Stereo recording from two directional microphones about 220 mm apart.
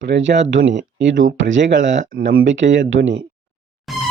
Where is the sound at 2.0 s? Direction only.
45° right (ahead or behind).